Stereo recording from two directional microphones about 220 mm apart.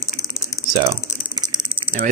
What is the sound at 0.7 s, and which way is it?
Typing, 15° right (ahead or behind).